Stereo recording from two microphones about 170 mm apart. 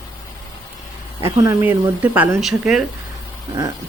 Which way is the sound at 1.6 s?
10° right (ahead or behind).